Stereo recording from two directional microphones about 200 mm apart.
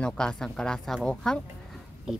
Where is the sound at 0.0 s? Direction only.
5° left (ahead or behind).